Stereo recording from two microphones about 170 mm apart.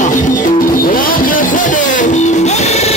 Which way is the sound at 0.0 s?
50° left (ahead or behind).